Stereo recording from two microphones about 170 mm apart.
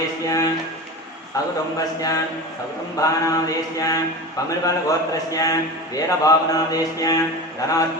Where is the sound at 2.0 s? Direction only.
20° left (ahead or behind).